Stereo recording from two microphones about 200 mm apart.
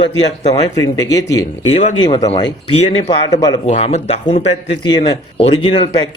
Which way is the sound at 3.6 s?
35° left (ahead or behind).